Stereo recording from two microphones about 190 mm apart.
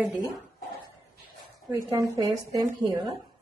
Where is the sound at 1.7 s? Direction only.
20° right (ahead or behind).